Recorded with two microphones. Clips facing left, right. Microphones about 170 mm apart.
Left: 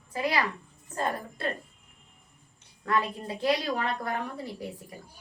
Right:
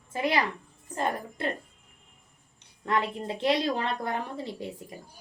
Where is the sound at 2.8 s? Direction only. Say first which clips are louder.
Right 1 dB; 20° right (ahead or behind).